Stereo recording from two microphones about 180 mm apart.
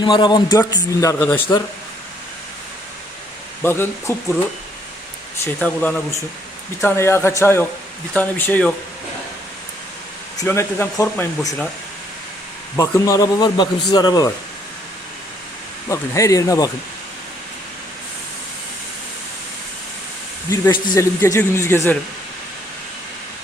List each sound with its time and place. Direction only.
0.0 s speech: 25° left (ahead or behind)
3.6 s speech: 10° left (ahead or behind)
5.5 s speech: 5° left (ahead or behind)
10.4 s speech: 15° left (ahead or behind)
12.7 s speech: 15° left (ahead or behind)
15.9 s speech: 15° left (ahead or behind)
20.5 s speech: 20° left (ahead or behind)